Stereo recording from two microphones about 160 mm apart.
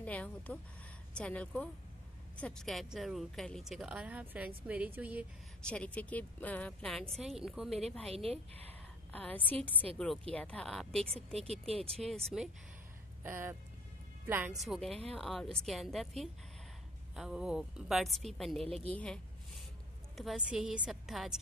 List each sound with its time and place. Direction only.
0.0 s speech: 10° left (ahead or behind); by 5.2 s 10° right (ahead or behind)
5.7 s speech: 10° left (ahead or behind)
8.1 s speech: 40° right (ahead or behind)
9.1 s speech: 10° left (ahead or behind)
11.4 s speech: 40° right (ahead or behind)
12.0 s speech: centre (ahead or behind)
13.2 s speech: 15° right (ahead or behind)
14.5 s speech: centre (ahead or behind)
18.9 s a sound: 5° left (ahead or behind)
20.2 s speech: 5° right (ahead or behind)